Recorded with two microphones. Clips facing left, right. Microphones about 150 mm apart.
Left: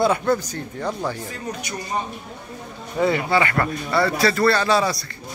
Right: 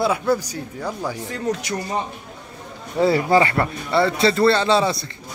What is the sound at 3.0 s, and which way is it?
A man's voice, 35° right (ahead or behind).